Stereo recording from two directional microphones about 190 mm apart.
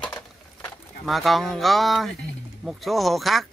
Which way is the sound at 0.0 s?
5° left (ahead or behind).